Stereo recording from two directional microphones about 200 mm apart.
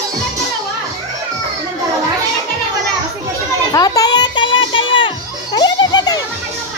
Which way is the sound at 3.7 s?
20° left (ahead or behind).